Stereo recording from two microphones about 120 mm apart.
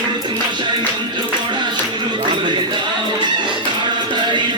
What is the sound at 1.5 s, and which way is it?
Music, 40° right (ahead or behind).